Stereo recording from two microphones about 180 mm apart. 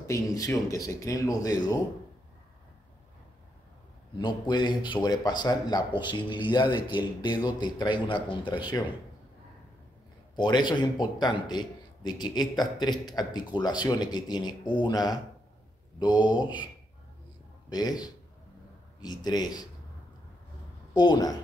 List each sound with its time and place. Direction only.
0.0 s speech: 15° left (ahead or behind)
4.2 s a man's voice: 25° left (ahead or behind)
10.3 s a man's voice: 25° left (ahead or behind)
17.6 s a man's voice: 20° left (ahead or behind)
20.9 s a man's voice: 25° left (ahead or behind)